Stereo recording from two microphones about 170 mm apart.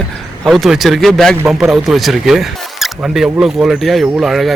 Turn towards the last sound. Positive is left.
turn(degrees=0)  # may be behind; listen again after turning